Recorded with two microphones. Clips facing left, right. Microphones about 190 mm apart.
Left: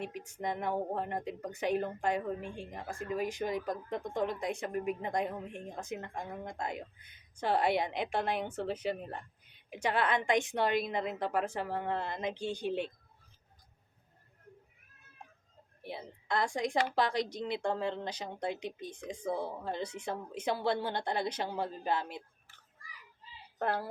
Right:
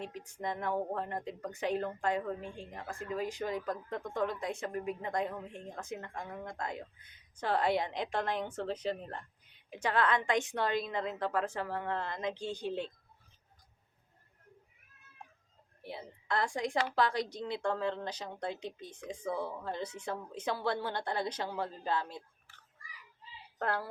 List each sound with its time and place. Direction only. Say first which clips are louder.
0.4 s a woman's voice: left 1 dB; 15° left (ahead or behind)
15.8 s a woman's voice: left 1 dB; 15° left (ahead or behind)
23.6 s a woman's voice: left 1 dB; 20° left (ahead or behind)